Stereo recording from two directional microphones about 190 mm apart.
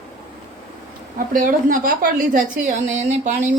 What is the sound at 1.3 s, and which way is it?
A woman's voice, 45° right (ahead or behind).